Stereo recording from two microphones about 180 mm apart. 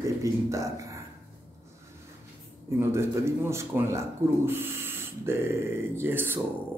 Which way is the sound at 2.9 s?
15° right (ahead or behind).